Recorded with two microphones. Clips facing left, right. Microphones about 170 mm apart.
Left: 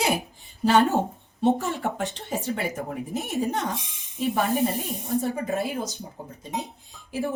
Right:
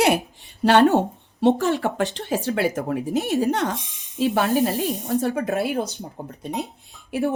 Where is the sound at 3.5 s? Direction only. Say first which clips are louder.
Right 5 dB; 90° right; by 5.9 s 70° right (ahead or behind).